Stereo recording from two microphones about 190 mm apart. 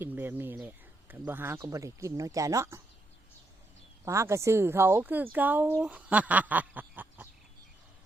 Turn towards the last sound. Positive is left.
turn(degrees=-10)  # may be behind; listen again after turning